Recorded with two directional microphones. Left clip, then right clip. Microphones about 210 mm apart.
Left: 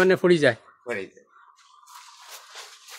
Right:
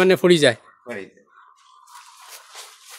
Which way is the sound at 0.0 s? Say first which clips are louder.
Right 3 dB; 30° right (ahead or behind).